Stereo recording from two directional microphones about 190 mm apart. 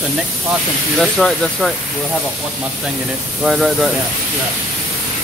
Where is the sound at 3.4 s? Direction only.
Centre (ahead or behind).